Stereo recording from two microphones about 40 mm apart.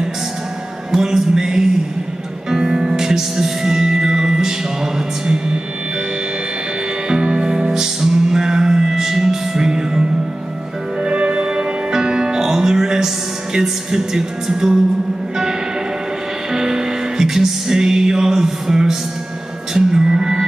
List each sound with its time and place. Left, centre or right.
0.9 s music: centre
7.1 s music: right
16.5 s music: centre